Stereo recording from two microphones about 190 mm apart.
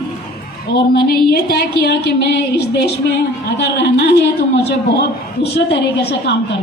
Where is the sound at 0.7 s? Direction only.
65° left (ahead or behind).